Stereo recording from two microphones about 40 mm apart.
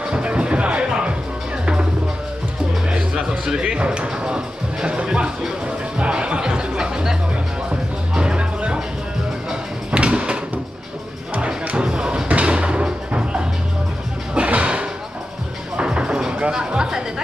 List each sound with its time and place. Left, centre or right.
0.0 s music: right
2.9 s music: right
4.8 s speech: right
5.9 s music: right
9.8 s a sound: right
11.3 s music: right